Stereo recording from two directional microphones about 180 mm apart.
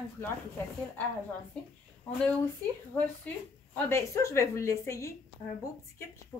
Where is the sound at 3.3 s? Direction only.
10° left (ahead or behind).